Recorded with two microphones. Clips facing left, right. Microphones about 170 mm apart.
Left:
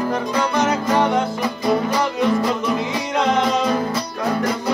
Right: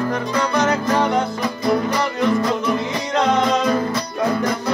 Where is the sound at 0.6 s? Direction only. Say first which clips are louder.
Left 1 dB; 20° left (ahead or behind).